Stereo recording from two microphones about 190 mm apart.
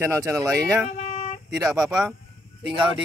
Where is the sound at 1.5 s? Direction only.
20° right (ahead or behind).